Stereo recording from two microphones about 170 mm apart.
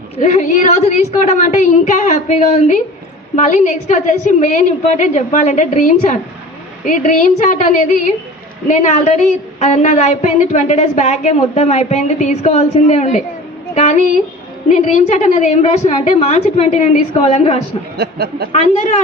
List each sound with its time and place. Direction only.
0.2 s a woman's voice: 45° left (ahead or behind)
13.7 s a sound: 45° left (ahead or behind)
14.7 s a woman's voice: 45° left (ahead or behind)
17.9 s speech: 75° right (ahead or behind)